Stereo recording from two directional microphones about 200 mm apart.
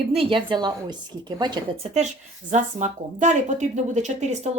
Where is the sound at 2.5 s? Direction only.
35° right (ahead or behind).